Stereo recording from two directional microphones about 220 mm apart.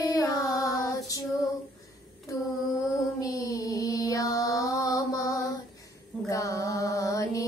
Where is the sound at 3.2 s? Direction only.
15° left (ahead or behind).